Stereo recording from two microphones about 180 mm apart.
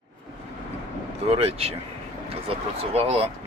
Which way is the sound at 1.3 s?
35° right (ahead or behind).